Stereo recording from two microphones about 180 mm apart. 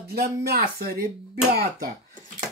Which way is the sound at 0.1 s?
60° right (ahead or behind).